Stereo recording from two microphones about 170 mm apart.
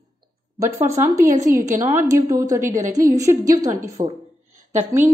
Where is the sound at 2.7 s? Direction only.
45° right (ahead or behind).